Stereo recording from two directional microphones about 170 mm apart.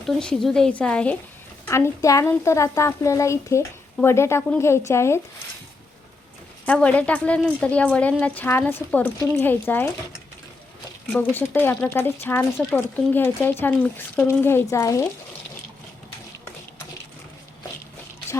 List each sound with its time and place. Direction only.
0.1 s speech: 5° left (ahead or behind)
6.7 s speech: 5° left (ahead or behind)
11.1 s speech: 10° left (ahead or behind)